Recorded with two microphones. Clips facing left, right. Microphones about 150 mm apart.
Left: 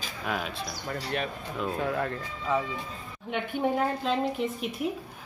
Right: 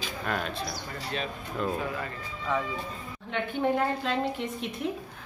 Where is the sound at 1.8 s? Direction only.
60° left (ahead or behind).